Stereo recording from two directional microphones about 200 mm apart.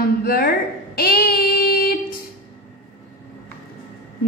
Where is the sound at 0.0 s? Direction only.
50° left (ahead or behind).